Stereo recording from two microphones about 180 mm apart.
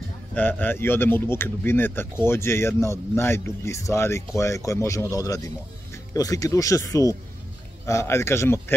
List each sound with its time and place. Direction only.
0.3 s speech: 10° left (ahead or behind)